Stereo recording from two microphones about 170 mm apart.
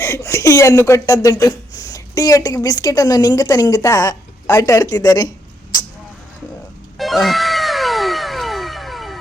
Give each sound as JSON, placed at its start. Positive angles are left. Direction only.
{"t": 0.0, "sound": "speech", "side_deg": 15}
{"t": 5.7, "sound": "vehicle", "side_deg": 25}
{"t": 7.0, "sound": "music", "side_deg": 0}